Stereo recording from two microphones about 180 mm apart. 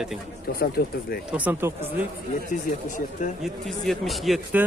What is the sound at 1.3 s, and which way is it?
Speech, 10° right (ahead or behind).